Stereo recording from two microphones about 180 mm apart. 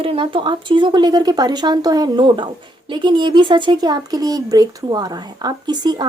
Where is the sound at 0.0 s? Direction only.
30° right (ahead or behind).